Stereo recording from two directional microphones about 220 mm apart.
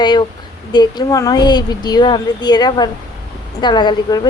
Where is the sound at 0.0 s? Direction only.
20° left (ahead or behind).